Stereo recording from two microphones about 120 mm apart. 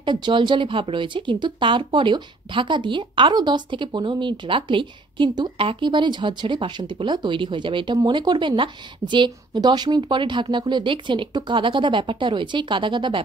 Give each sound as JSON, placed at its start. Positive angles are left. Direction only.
{"t": 0.0, "sound": "a woman's voice", "side_deg": -40}